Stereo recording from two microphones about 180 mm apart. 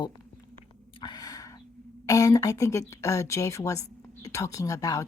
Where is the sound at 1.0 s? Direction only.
20° left (ahead or behind).